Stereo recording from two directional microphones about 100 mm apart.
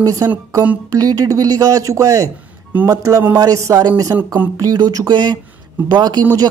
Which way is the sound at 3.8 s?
45° right (ahead or behind).